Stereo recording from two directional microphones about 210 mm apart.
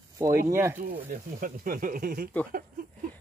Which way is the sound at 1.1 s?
40° right (ahead or behind).